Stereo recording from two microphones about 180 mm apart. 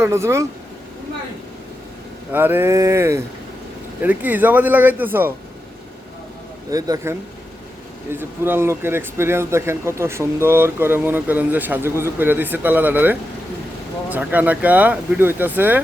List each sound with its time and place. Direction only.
0.0 s speech: 15° right (ahead or behind)
2.3 s speech: 10° right (ahead or behind)
6.7 s a man's voice: 20° right (ahead or behind)